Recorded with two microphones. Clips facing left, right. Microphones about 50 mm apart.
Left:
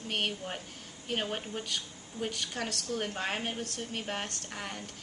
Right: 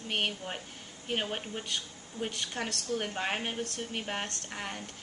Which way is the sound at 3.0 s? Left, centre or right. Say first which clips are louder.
Left 1 dB; centre.